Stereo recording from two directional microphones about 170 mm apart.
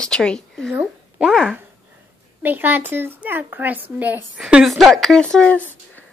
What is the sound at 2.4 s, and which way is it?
Speech, 10° right (ahead or behind).